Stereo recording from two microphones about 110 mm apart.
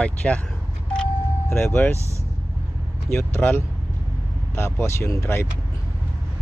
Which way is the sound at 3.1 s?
20° left (ahead or behind).